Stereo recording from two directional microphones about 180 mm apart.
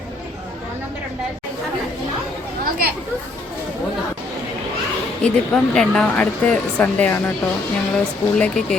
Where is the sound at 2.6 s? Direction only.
55° right (ahead or behind).